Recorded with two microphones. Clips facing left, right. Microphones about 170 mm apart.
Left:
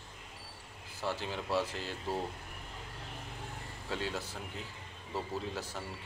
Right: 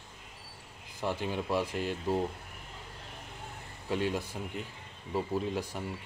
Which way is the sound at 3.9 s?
15° right (ahead or behind).